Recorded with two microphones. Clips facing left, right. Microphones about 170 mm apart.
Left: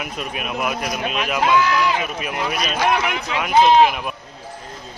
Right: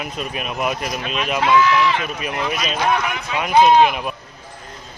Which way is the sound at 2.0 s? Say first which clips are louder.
Even; 5° left (ahead or behind).